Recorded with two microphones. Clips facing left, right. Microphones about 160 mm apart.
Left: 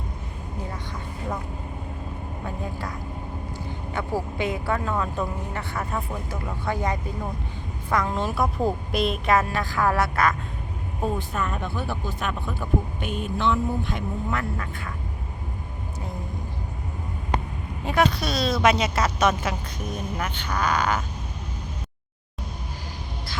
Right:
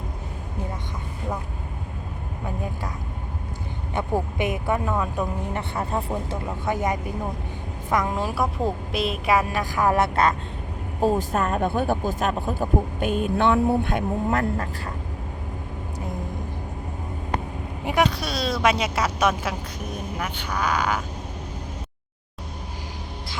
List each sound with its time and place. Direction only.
3.9 s speech: 20° right (ahead or behind)
5.7 s speech: 30° right (ahead or behind)
6.7 s speech: 20° right (ahead or behind)
11.0 s speech: 40° right (ahead or behind)
13.3 s speech: 60° right (ahead or behind)
14.3 s speech: 40° right (ahead or behind)
17.8 s speech: 15° right (ahead or behind)